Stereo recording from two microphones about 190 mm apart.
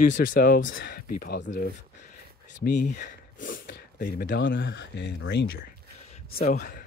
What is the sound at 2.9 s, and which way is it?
Speech, 45° left (ahead or behind).